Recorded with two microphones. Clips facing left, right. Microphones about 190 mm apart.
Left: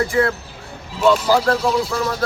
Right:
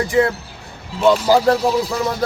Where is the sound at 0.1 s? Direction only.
15° right (ahead or behind).